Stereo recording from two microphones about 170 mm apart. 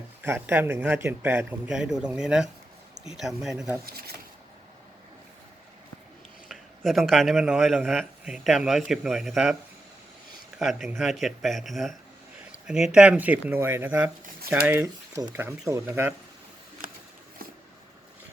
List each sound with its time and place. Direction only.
0.2 s a man's voice: 10° right (ahead or behind)
3.8 s speech: 65° right (ahead or behind)
6.5 s speech: centre (ahead or behind)
10.6 s a man's voice: centre (ahead or behind)